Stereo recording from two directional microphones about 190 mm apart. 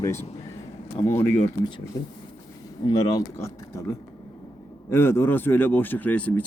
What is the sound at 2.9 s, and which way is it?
Speech, 20° left (ahead or behind).